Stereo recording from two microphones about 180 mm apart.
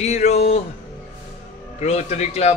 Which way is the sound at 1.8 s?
40° left (ahead or behind).